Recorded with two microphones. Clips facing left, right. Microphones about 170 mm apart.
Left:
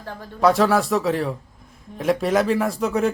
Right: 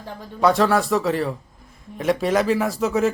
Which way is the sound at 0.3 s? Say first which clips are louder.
Even; centre (ahead or behind).